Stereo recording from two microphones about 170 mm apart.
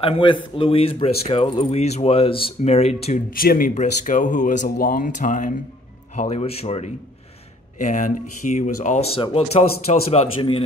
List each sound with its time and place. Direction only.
0.0 s speech: 30° left (ahead or behind)
3.3 s speech: 55° left (ahead or behind)
3.7 s speech: 45° left (ahead or behind)
6.1 s speech: 40° left (ahead or behind)
7.8 s speech: 50° left (ahead or behind)